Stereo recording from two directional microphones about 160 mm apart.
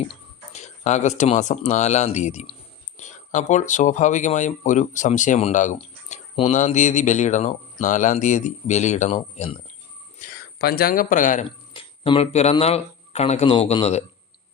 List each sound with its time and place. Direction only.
0.5 s speech: 45° left (ahead or behind)
10.2 s speech: 75° left (ahead or behind); by 11.4 s 50° left (ahead or behind)
11.7 s speech: 35° left (ahead or behind)